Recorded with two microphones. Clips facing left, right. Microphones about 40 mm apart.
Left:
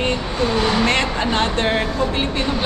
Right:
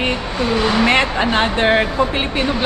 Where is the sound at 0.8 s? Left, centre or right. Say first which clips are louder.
Right 3 dB; centre.